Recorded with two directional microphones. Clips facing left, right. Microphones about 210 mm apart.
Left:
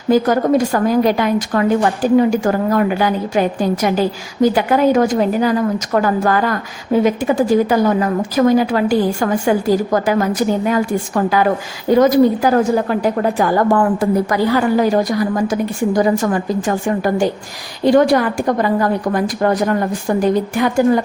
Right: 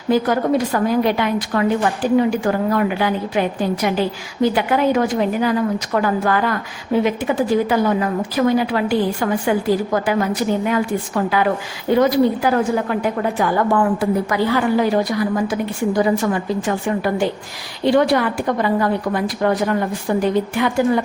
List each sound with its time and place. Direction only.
0.1 s a woman's voice: 45° left (ahead or behind)